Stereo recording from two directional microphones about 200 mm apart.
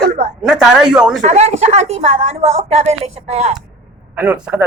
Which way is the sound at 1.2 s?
35° right (ahead or behind).